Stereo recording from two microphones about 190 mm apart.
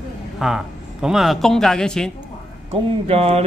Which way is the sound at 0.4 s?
5° right (ahead or behind).